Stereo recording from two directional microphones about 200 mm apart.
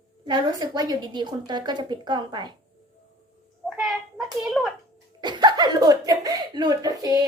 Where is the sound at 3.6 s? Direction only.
Centre (ahead or behind).